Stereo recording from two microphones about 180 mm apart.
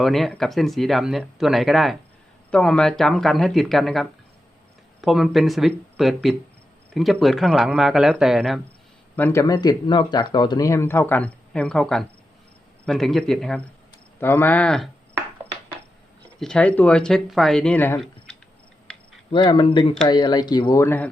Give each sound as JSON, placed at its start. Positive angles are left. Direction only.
{"t": 0.0, "sound": "speech", "side_deg": 0}
{"t": 9.1, "sound": "speech", "side_deg": 10}
{"t": 16.4, "sound": "speech", "side_deg": 5}
{"t": 19.3, "sound": "speech", "side_deg": 25}